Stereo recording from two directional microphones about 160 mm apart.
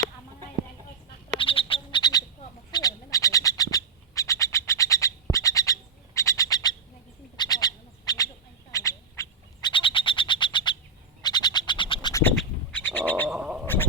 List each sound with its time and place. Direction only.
1.4 s frog: 35° left (ahead or behind)
2.7 s bird: 20° left (ahead or behind)
7.3 s duck: 25° left (ahead or behind)
8.7 s frog: 20° left (ahead or behind)
12.4 s bird: 10° left (ahead or behind)
13.3 s gargling: 5° right (ahead or behind)